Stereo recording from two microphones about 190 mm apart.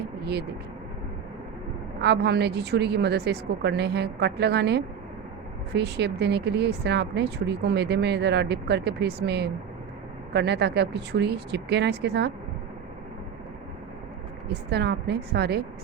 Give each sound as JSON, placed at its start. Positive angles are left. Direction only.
{"t": 2.0, "sound": "speech", "side_deg": -60}
{"t": 14.4, "sound": "speech", "side_deg": -60}